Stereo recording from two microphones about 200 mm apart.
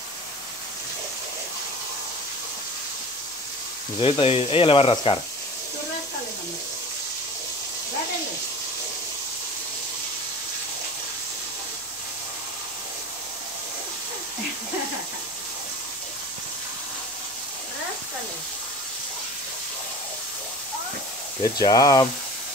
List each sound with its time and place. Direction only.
4.0 s speech: 30° left (ahead or behind)
21.4 s speech: 20° left (ahead or behind)